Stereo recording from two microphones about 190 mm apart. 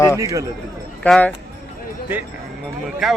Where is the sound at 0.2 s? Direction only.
15° right (ahead or behind).